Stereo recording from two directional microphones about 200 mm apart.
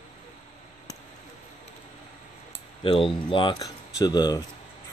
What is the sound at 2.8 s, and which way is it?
Speech, 25° left (ahead or behind).